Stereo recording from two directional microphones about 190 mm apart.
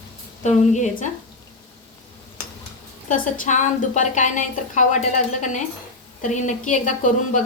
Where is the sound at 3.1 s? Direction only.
45° left (ahead or behind).